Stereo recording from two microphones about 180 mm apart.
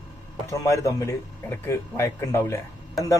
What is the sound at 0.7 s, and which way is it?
Speech, 15° left (ahead or behind).